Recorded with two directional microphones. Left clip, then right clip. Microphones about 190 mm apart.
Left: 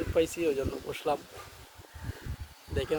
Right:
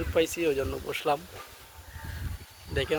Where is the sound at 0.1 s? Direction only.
Centre (ahead or behind).